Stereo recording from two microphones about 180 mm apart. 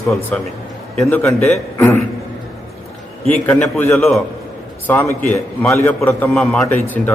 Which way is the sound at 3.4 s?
10° left (ahead or behind).